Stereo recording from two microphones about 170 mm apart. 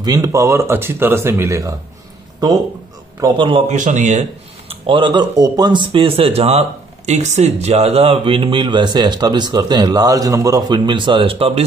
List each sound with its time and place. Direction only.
0.0 s speech: 20° right (ahead or behind)
3.2 s speech: 25° right (ahead or behind)
3.7 s speech: 45° right (ahead or behind)